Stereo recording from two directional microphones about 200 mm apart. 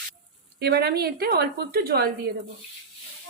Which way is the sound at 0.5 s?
55° right (ahead or behind).